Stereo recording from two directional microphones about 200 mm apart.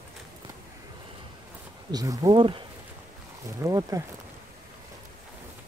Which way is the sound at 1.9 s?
20° right (ahead or behind).